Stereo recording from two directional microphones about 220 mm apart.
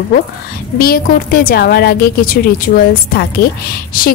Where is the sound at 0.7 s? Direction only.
45° left (ahead or behind).